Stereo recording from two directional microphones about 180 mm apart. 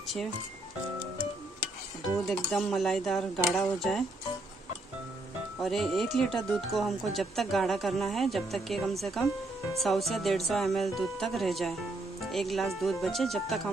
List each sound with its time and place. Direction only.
2.2 s speech: centre (ahead or behind)
5.6 s speech: centre (ahead or behind)